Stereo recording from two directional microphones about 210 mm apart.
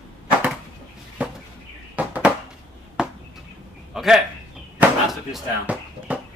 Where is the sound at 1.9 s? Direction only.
5° right (ahead or behind).